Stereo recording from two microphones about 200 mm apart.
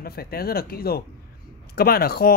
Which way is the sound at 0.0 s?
50° left (ahead or behind).